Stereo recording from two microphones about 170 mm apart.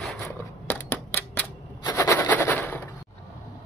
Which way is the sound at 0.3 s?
10° left (ahead or behind).